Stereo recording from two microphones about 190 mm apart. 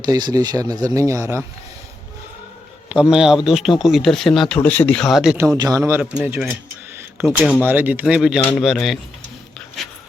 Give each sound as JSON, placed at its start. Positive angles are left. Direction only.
{"t": 0.0, "sound": "speech", "side_deg": -20}
{"t": 2.9, "sound": "speech", "side_deg": -5}
{"t": 5.5, "sound": "speech", "side_deg": -20}